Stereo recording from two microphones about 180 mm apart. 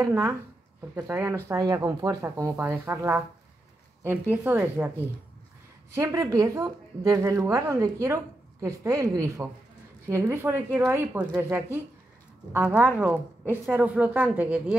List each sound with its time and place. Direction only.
0.0 s a woman's voice: 15° right (ahead or behind)
5.9 s a woman's voice: 15° right (ahead or behind)